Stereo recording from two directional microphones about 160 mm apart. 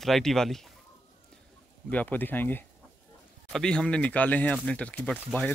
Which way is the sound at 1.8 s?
10° left (ahead or behind).